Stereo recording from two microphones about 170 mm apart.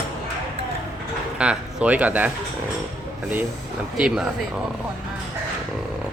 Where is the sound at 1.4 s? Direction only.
5° right (ahead or behind).